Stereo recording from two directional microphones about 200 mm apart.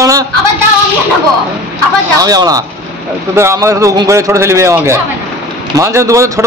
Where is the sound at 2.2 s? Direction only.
20° right (ahead or behind).